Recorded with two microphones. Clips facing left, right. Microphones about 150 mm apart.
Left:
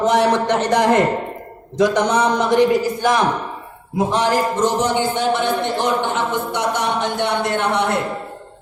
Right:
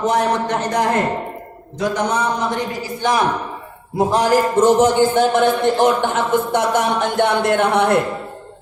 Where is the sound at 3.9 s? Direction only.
40° right (ahead or behind).